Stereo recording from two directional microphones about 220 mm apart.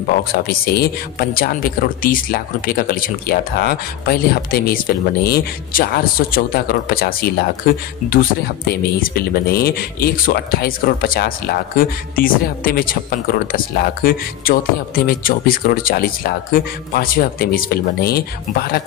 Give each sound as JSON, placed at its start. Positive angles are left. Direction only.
{"t": 0.2, "sound": "a man's voice", "side_deg": 40}